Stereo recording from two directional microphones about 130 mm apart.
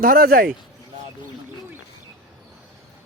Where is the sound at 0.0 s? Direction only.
90° right.